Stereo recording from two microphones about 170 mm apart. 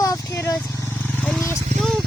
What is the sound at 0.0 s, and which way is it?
Vehicle, 15° left (ahead or behind).